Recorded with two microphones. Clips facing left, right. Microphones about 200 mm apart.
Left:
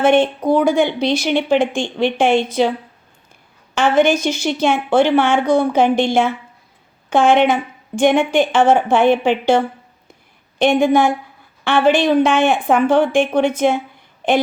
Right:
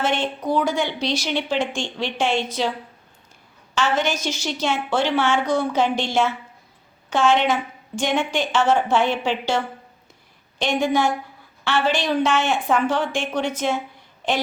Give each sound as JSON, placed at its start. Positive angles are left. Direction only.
{"t": 0.0, "sound": "speech", "side_deg": 55}
{"t": 3.8, "sound": "a woman's voice", "side_deg": 55}